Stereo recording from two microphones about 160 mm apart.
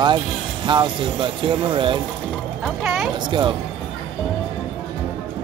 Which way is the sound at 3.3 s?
30° right (ahead or behind).